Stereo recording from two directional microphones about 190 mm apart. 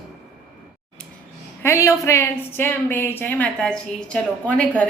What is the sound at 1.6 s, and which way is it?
Speech, 15° left (ahead or behind).